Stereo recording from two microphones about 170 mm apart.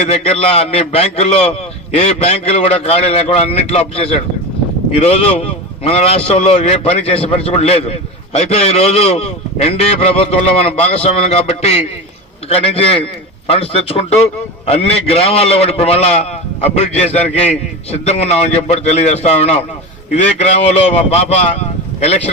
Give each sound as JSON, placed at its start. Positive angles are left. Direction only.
{"t": 0.1, "sound": "a man's voice", "side_deg": 35}